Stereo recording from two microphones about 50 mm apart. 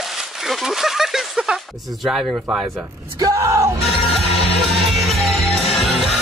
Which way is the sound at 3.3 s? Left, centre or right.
Right.